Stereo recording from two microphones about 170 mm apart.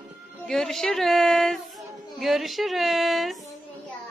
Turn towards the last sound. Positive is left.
turn(degrees=0)  # may be behind; listen again after turning